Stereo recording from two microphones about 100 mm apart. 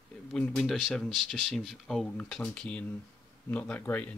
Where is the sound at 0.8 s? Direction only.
Centre (ahead or behind).